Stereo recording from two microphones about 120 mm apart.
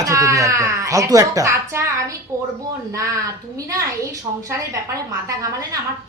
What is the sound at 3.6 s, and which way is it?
Speech, 30° right (ahead or behind).